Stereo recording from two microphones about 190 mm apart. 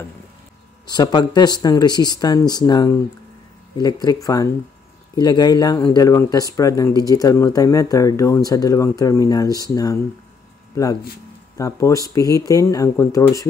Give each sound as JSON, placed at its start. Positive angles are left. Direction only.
{"t": 0.8, "sound": "speech", "side_deg": 20}
{"t": 10.8, "sound": "speech", "side_deg": 15}